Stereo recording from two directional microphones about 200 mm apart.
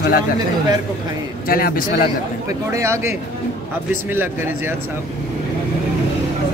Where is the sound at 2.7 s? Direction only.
15° right (ahead or behind).